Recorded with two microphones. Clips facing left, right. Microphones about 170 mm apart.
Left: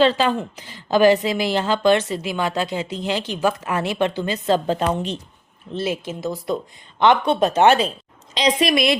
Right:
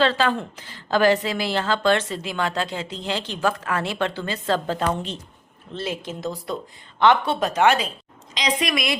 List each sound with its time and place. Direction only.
0.0 s a woman's voice: 15° left (ahead or behind)
7.0 s speech: 20° left (ahead or behind)